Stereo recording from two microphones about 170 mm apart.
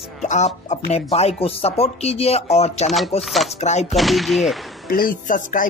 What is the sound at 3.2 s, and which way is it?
Speech, centre (ahead or behind).